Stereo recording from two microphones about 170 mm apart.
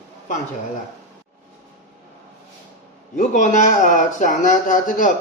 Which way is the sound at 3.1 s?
50° left (ahead or behind).